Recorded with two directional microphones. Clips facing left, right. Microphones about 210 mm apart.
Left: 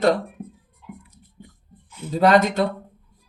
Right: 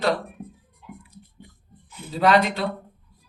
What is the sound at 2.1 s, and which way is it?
Speech, 45° left (ahead or behind).